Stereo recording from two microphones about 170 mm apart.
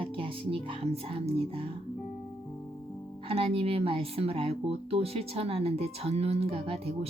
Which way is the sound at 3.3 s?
35° right (ahead or behind).